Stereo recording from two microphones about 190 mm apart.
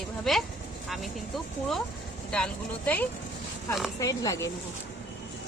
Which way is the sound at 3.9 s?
20° left (ahead or behind).